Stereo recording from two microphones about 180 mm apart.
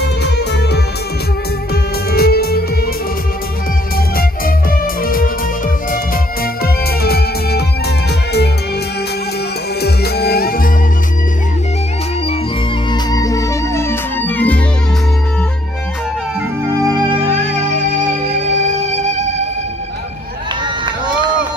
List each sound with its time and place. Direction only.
0.0 s music: 65° left (ahead or behind)
4.2 s music: 50° left (ahead or behind)
6.4 s music: 60° left (ahead or behind)
9.8 s music: 65° left (ahead or behind)
12.9 s music: 20° left (ahead or behind)
16.7 s music: 20° right (ahead or behind)
18.3 s music: 40° right (ahead or behind)